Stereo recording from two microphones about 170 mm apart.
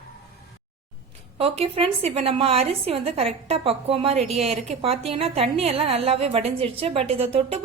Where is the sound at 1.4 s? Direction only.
35° right (ahead or behind).